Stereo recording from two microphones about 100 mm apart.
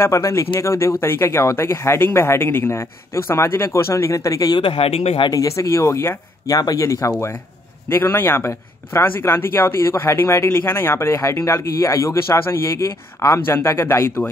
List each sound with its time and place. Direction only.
0.0 s speech: 30° left (ahead or behind)
4.6 s speech: 65° left (ahead or behind)
5.3 s speech: 35° left (ahead or behind)